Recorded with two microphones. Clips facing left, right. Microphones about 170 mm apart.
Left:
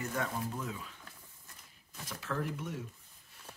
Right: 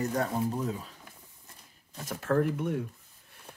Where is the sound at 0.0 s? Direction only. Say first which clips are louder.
Right 7 dB; 35° right (ahead or behind).